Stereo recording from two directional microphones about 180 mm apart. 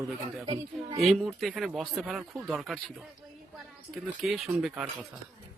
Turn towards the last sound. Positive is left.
turn(degrees=0)  # may be behind; listen again after turning